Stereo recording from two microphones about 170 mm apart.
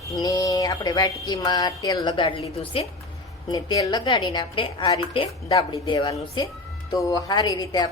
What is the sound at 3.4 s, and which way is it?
A woman's voice, 25° left (ahead or behind).